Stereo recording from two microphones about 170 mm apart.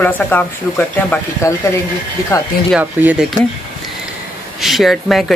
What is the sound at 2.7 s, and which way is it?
Speech, 5° right (ahead or behind).